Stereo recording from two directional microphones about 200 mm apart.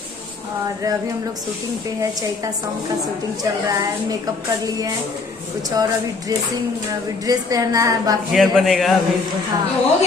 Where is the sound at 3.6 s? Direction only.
20° right (ahead or behind).